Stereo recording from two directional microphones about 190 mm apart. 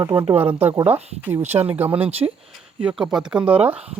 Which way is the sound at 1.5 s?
20° right (ahead or behind).